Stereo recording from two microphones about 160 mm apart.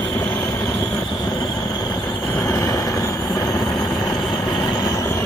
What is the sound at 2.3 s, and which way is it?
Train, 15° left (ahead or behind).